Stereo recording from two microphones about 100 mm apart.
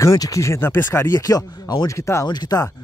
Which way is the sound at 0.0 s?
35° left (ahead or behind).